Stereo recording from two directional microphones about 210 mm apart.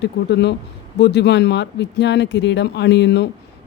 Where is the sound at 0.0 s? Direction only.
55° left (ahead or behind).